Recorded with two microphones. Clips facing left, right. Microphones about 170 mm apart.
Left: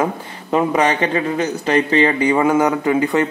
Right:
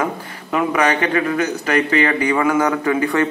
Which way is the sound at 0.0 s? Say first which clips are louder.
Left 2 dB; 25° left (ahead or behind).